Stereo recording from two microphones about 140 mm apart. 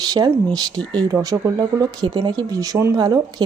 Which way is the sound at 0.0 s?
25° right (ahead or behind).